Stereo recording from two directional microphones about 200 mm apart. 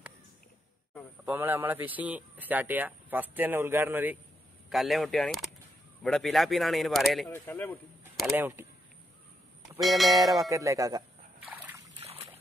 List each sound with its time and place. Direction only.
1.2 s speech: 10° right (ahead or behind)
7.2 s speech: 10° left (ahead or behind)
8.2 s speech: 10° right (ahead or behind)
9.8 s speech: centre (ahead or behind)
10.5 s speech: 15° right (ahead or behind)
12.0 s trickle: 30° right (ahead or behind)